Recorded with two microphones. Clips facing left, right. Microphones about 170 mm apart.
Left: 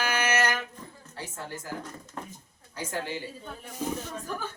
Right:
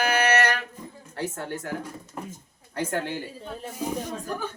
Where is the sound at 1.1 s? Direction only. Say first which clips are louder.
Right 7 dB; 65° right (ahead or behind).